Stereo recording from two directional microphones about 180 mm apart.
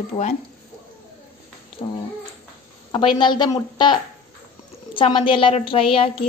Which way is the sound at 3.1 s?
25° left (ahead or behind).